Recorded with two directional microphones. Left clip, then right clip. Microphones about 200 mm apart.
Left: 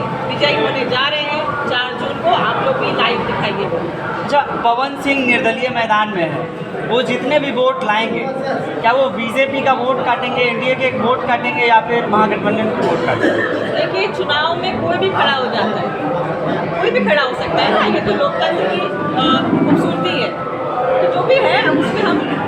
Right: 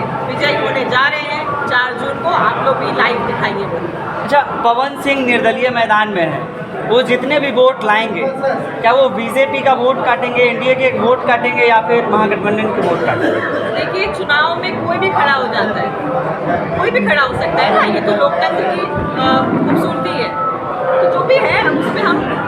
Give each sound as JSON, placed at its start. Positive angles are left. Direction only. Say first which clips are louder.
{"t": 4.3, "sound": "a man's voice", "louder": "right 2 dB", "side_deg": -25}
{"t": 14.3, "sound": "speech", "louder": "right 5 dB", "side_deg": 10}
{"t": 16.8, "sound": "speech", "louder": "right 1 dB", "side_deg": 10}
{"t": 21.2, "sound": "chatter", "louder": "right 1 dB", "side_deg": 10}